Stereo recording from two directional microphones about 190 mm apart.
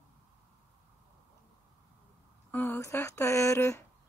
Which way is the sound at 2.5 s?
10° left (ahead or behind).